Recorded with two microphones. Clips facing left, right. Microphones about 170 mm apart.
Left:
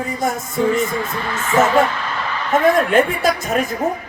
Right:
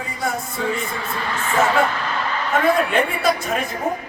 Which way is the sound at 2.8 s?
45° left (ahead or behind).